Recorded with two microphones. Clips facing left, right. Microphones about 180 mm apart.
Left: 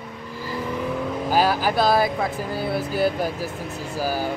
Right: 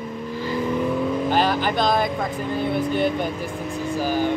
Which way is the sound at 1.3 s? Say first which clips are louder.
Left 4 dB; 5° left (ahead or behind).